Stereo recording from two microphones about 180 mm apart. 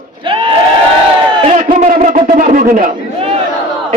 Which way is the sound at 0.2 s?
30° right (ahead or behind).